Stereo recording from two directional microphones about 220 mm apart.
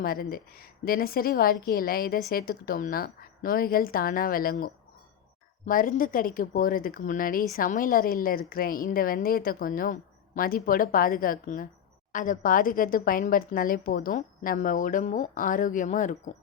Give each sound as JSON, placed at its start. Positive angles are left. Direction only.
{"t": 0.0, "sound": "a woman's voice", "side_deg": 40}